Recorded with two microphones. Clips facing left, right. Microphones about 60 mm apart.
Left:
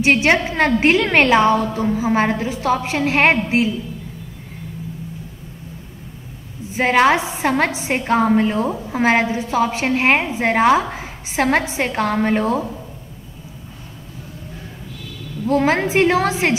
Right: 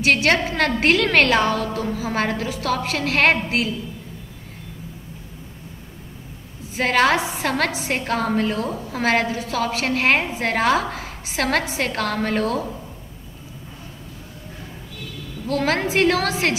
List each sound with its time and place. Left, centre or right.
0.0 s a woman's voice: left
6.7 s a woman's voice: centre
15.4 s a woman's voice: left